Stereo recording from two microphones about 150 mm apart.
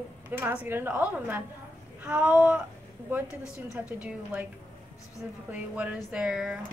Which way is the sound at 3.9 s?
10° right (ahead or behind).